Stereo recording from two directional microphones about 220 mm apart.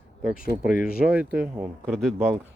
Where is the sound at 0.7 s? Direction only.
40° left (ahead or behind).